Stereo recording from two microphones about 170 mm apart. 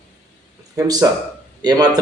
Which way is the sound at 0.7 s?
20° right (ahead or behind).